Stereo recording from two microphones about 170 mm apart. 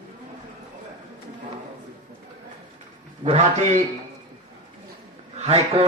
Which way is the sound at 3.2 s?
40° right (ahead or behind).